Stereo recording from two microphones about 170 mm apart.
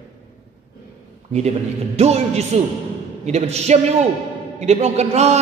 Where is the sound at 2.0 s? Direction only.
40° right (ahead or behind).